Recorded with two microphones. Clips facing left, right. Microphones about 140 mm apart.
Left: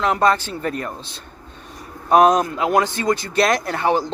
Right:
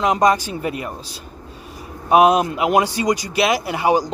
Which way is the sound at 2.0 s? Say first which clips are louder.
Right 1 dB; 10° right (ahead or behind).